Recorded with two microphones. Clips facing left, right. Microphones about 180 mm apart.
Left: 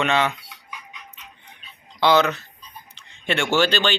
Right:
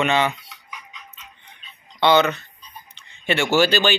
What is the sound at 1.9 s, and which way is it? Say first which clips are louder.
Speech: right 1 dB; centre (ahead or behind).